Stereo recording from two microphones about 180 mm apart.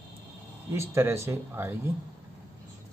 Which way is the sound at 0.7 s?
15° right (ahead or behind).